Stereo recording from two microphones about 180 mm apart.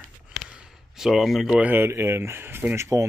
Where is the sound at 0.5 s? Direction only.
5° right (ahead or behind).